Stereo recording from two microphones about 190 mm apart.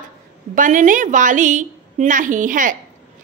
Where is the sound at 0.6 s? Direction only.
45° right (ahead or behind).